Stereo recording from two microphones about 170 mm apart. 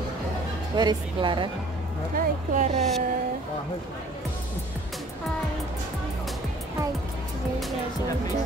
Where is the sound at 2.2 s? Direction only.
45° right (ahead or behind).